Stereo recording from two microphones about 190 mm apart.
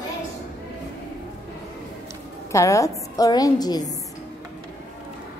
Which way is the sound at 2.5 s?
15° left (ahead or behind).